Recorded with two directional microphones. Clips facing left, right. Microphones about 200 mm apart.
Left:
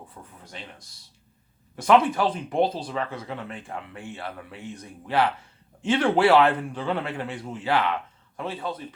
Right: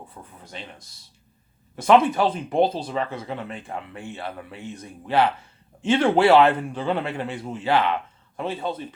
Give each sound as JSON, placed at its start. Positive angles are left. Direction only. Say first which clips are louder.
{"t": 0.4, "sound": "speech", "louder": "right 3 dB", "side_deg": -25}